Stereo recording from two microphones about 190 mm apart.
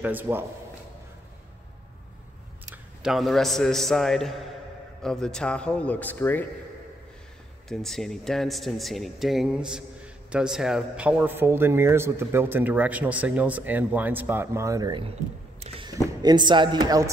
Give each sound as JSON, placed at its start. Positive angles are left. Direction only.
{"t": 0.0, "sound": "speech", "side_deg": -10}
{"t": 2.6, "sound": "a man's voice", "side_deg": -5}
{"t": 7.6, "sound": "speech", "side_deg": 0}
{"t": 15.6, "sound": "single-lens reflex camera", "side_deg": -30}
{"t": 16.2, "sound": "speech", "side_deg": -20}